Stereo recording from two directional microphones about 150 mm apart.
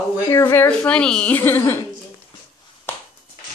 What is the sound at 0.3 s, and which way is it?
A woman's voice, 15° left (ahead or behind).